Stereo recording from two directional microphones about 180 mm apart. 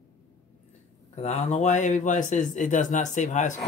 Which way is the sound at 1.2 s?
40° left (ahead or behind).